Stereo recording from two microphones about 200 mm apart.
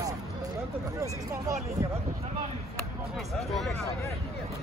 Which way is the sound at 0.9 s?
15° right (ahead or behind).